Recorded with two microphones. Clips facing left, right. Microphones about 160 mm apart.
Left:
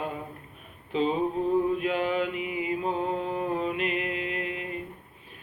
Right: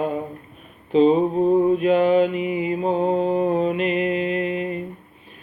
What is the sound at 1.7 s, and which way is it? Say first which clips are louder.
Mantra: right 10 dB; 25° right (ahead or behind).